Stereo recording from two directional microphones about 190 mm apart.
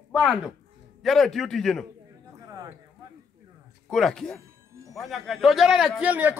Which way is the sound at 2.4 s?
20° right (ahead or behind).